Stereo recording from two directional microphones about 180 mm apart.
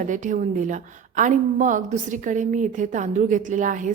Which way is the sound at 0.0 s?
45° right (ahead or behind).